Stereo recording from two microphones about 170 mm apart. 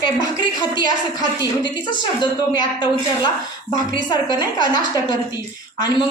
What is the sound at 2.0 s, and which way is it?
Speech, 25° left (ahead or behind).